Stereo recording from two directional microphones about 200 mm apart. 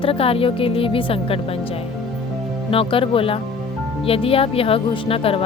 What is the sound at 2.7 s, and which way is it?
Speech, 25° left (ahead or behind).